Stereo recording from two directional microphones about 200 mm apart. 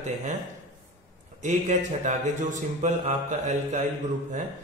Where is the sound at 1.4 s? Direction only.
35° right (ahead or behind).